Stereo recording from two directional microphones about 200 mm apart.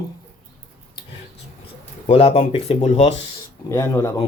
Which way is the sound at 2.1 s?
30° left (ahead or behind).